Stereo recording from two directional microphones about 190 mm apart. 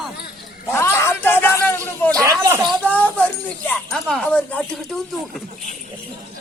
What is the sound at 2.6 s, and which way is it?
A man's voice, 10° left (ahead or behind).